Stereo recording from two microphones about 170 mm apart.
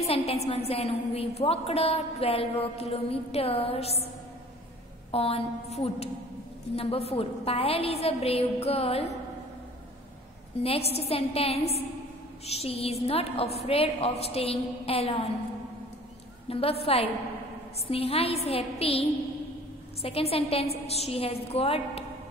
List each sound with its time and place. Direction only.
0.0 s a woman's voice: 35° left (ahead or behind)
5.1 s a woman's voice: 35° left (ahead or behind)
10.6 s a woman's voice: 35° left (ahead or behind)
16.4 s a woman's voice: 35° left (ahead or behind)